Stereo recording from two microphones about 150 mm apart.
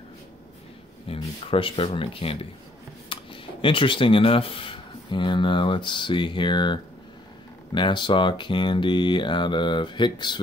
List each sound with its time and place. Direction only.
1.0 s speech: 40° left (ahead or behind)
3.1 s a sound: 35° left (ahead or behind)
3.6 s speech: 35° left (ahead or behind)